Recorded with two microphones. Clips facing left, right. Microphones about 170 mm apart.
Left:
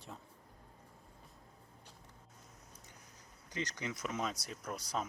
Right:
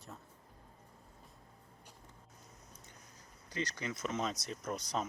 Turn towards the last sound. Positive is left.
turn(degrees=5)  # may be behind; listen again after turning